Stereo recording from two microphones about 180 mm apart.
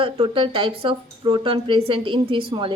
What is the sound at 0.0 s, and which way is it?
A woman's voice, 30° right (ahead or behind).